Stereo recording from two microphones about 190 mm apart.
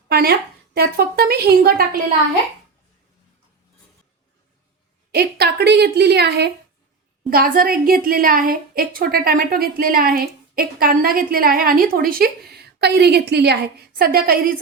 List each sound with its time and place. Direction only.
0.1 s a woman's voice: 55° right (ahead or behind)
5.1 s a woman's voice: 60° right (ahead or behind)
7.3 s a woman's voice: 50° right (ahead or behind)